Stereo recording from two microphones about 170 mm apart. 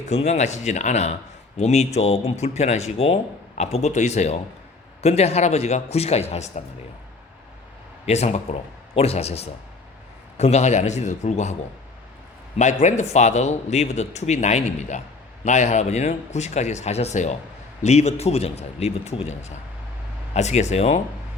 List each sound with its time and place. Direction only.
0.1 s a man's voice: 40° left (ahead or behind)
8.0 s speech: 40° left (ahead or behind)
12.5 s a man's voice: 45° left (ahead or behind)